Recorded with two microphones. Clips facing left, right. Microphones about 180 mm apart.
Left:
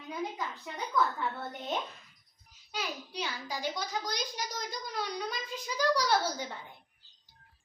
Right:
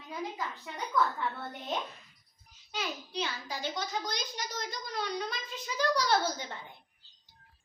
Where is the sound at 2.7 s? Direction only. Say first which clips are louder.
Right 1 dB; 10° left (ahead or behind).